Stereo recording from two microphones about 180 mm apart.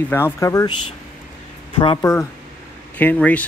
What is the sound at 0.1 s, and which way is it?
Speech, 15° left (ahead or behind).